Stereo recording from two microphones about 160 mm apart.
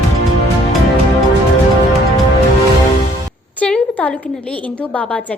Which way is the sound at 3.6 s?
10° left (ahead or behind).